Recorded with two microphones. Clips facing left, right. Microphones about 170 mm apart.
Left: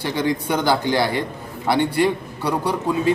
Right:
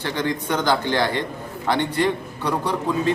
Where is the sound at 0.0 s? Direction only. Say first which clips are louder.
Left 3 dB; 10° left (ahead or behind).